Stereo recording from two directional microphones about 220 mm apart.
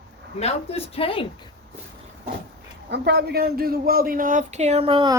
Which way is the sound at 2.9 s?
50° right (ahead or behind).